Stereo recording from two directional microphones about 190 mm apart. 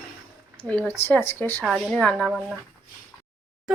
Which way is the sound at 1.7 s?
5° right (ahead or behind).